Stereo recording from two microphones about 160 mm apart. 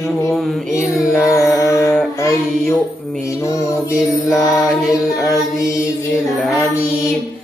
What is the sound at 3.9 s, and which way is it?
Music, centre (ahead or behind).